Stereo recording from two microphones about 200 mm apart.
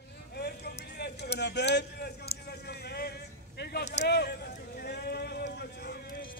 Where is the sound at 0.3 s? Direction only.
55° left (ahead or behind).